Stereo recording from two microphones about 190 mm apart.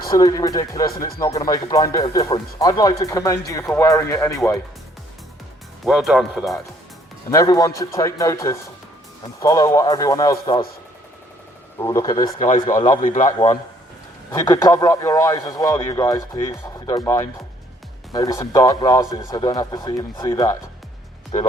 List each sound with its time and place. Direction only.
0.2 s speech: 20° left (ahead or behind)
0.9 s speech: 50° left (ahead or behind)
1.2 s a man's voice: 15° left (ahead or behind)
5.8 s speech: centre (ahead or behind)
7.3 s a man's voice: 15° left (ahead or behind)
11.8 s speech: 20° left (ahead or behind)
12.4 s a man's voice: 40° left (ahead or behind)
14.3 s a man's voice: 20° left (ahead or behind)